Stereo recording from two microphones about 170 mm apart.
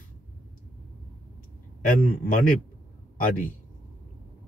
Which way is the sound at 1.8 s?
55° left (ahead or behind).